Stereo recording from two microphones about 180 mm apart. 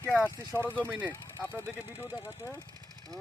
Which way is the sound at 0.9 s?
10° right (ahead or behind).